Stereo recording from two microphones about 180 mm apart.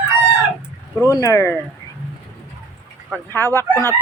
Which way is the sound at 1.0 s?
15° left (ahead or behind).